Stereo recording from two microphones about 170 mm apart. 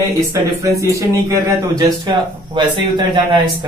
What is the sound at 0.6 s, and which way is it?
A man's voice, 20° right (ahead or behind).